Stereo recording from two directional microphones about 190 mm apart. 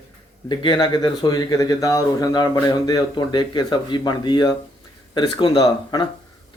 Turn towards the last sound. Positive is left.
turn(degrees=20)  # may be behind; listen again after turning